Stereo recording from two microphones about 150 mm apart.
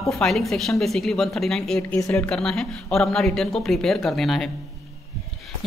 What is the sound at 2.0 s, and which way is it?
Speech, 20° left (ahead or behind).